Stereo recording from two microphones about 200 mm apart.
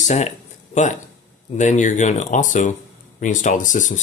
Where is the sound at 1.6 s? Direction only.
40° left (ahead or behind).